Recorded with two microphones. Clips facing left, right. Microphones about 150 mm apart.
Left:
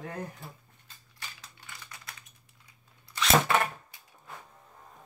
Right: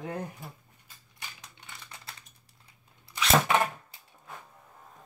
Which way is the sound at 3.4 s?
15° right (ahead or behind).